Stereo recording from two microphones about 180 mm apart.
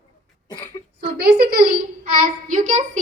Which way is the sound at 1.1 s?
60° right (ahead or behind).